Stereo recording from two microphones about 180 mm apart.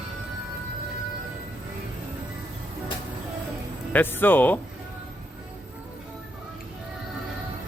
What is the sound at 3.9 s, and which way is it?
Speech, 10° left (ahead or behind).